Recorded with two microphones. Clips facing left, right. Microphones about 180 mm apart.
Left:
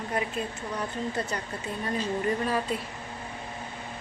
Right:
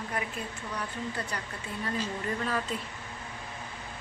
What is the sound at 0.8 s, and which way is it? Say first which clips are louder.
Speech: left 5 dB; 20° left (ahead or behind).